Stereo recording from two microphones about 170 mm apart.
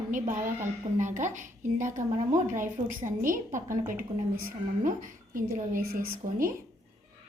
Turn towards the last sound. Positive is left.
turn(degrees=-55)  # may be behind; listen again after turning